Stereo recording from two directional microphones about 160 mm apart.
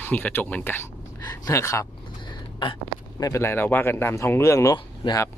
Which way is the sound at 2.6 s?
30° left (ahead or behind).